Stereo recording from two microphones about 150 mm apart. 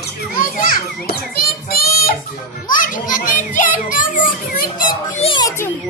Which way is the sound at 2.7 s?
65° left (ahead or behind).